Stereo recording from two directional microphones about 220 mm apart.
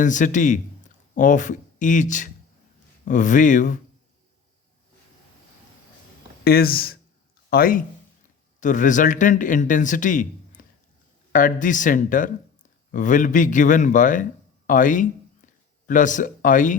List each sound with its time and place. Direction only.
0.0 s speech: 35° left (ahead or behind)
6.4 s speech: 45° left (ahead or behind)